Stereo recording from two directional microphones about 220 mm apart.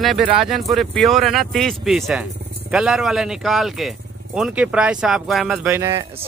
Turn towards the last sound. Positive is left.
turn(degrees=-10)  # may be behind; listen again after turning